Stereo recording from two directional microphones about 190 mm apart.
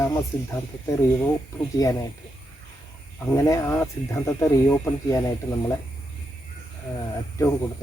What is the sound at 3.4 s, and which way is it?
Speech, 15° left (ahead or behind).